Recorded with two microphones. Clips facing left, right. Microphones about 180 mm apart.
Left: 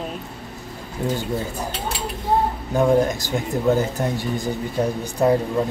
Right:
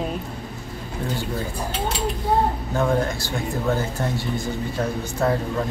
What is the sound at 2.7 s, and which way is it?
Speech, 15° left (ahead or behind).